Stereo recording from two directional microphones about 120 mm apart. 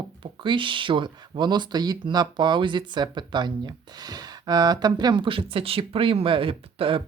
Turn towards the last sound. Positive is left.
turn(degrees=-50)  # may be behind; listen again after turning